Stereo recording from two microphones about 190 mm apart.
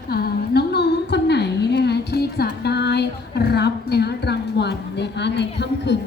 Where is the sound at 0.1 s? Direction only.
55° left (ahead or behind).